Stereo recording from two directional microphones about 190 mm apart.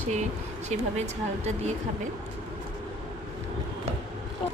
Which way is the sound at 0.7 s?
35° right (ahead or behind).